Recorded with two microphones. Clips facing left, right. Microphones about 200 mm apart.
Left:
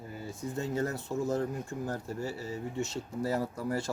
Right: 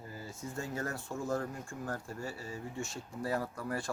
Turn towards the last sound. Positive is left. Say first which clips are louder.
# left 5 dB
turn(degrees=25)  # may be behind; listen again after turning